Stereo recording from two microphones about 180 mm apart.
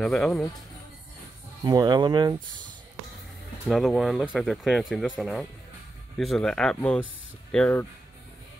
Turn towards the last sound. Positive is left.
turn(degrees=5)  # may be behind; listen again after turning